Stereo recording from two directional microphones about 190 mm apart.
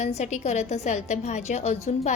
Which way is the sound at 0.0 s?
35° left (ahead or behind).